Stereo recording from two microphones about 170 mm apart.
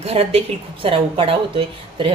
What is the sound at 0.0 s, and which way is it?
A woman's voice, 35° right (ahead or behind).